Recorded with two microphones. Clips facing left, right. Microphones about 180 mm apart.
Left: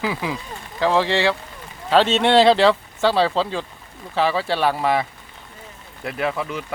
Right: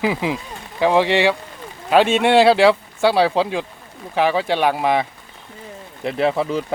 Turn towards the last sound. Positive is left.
turn(degrees=-35)  # may be behind; listen again after turning